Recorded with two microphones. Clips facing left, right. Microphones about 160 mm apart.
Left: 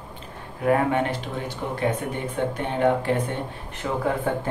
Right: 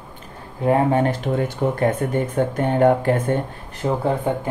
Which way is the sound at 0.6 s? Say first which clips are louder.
Right 3 dB; 25° right (ahead or behind).